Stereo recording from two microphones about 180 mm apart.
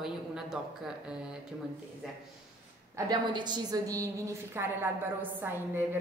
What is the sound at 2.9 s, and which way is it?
A woman's voice, 20° right (ahead or behind).